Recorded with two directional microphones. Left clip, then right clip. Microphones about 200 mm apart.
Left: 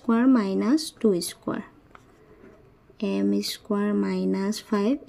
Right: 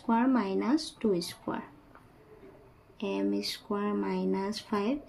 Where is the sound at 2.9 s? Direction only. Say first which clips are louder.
Left 5 dB; 35° left (ahead or behind).